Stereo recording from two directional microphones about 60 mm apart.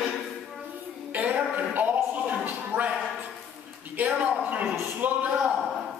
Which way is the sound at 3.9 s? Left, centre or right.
Right.